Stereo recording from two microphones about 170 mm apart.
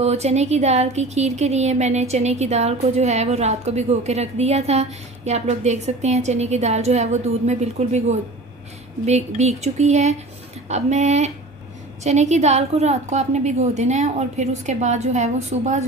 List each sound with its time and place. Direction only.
0.0 s speech: 40° right (ahead or behind)